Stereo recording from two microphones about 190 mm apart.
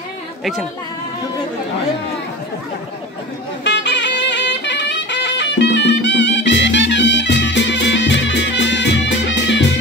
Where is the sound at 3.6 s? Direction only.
65° left (ahead or behind).